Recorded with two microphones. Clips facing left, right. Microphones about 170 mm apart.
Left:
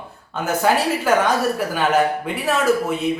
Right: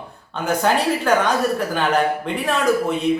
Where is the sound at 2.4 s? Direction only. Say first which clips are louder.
Left 1 dB; 5° left (ahead or behind).